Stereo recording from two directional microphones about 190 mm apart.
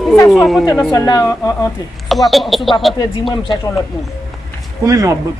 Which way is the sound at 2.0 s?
Centre (ahead or behind).